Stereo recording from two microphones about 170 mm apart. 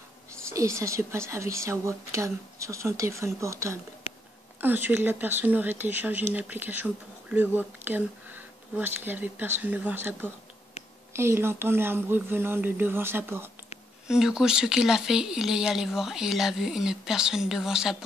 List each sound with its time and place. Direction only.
0.5 s speech: 15° right (ahead or behind)